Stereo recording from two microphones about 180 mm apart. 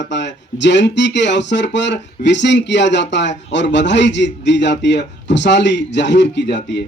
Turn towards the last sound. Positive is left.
turn(degrees=75)  # may be behind; listen again after turning